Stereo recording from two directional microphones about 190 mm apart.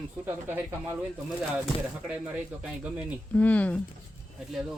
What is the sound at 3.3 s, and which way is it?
Speech, 10° left (ahead or behind).